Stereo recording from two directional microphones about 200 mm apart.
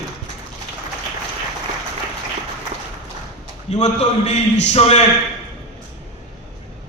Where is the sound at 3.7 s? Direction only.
30° left (ahead or behind).